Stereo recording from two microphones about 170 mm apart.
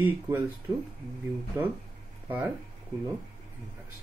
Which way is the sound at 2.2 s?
10° right (ahead or behind).